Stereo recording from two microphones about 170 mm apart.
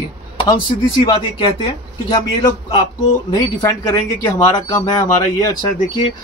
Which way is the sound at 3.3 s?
25° left (ahead or behind).